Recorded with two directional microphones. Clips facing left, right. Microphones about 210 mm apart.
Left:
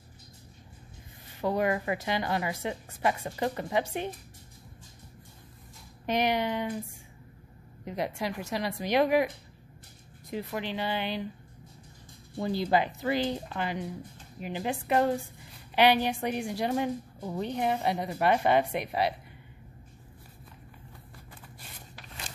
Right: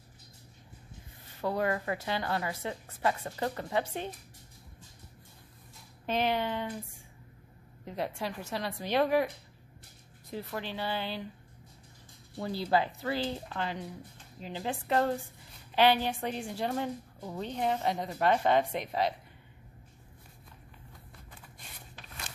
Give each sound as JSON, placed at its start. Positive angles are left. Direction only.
{"t": 1.4, "sound": "a woman's voice", "side_deg": 15}
{"t": 6.0, "sound": "a woman's voice", "side_deg": 15}
{"t": 7.8, "sound": "a woman's voice", "side_deg": 15}
{"t": 10.3, "sound": "a woman's voice", "side_deg": 15}
{"t": 12.4, "sound": "a woman's voice", "side_deg": 20}